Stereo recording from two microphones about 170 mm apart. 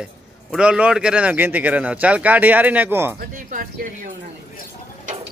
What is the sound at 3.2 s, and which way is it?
Speech, 50° right (ahead or behind).